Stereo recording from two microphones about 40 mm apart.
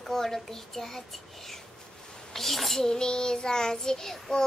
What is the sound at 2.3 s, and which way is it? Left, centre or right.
Child singing, centre.